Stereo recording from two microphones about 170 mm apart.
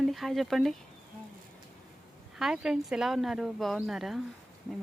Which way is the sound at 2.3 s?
Centre (ahead or behind).